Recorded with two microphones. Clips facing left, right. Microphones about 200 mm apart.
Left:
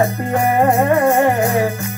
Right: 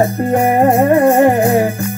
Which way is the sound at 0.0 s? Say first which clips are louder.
Right 4 dB; 30° right (ahead or behind).